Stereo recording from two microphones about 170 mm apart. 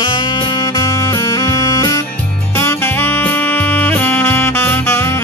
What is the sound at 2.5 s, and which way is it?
Saxophone, 15° left (ahead or behind).